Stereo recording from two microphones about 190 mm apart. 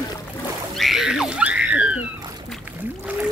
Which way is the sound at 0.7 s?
Centre (ahead or behind).